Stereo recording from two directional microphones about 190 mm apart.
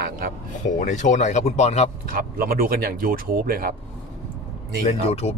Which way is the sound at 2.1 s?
50° right (ahead or behind).